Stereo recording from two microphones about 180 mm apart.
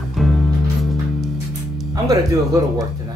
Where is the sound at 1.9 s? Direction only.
20° right (ahead or behind).